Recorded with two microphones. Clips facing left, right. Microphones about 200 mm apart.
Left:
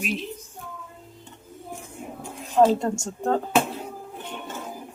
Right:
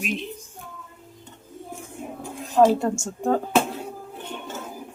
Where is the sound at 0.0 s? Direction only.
Centre (ahead or behind).